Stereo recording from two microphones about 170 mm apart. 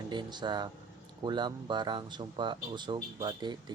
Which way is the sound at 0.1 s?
25° right (ahead or behind).